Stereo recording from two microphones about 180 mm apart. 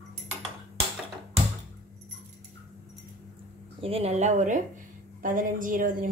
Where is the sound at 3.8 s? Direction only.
30° right (ahead or behind); by 6.1 s 50° right (ahead or behind).